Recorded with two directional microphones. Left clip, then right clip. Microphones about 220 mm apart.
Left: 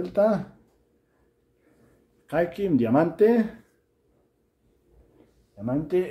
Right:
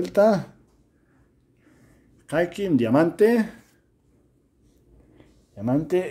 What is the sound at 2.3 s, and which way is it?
Speech, 30° right (ahead or behind).